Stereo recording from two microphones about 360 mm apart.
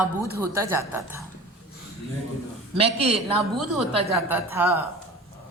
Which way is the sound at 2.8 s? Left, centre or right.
Centre.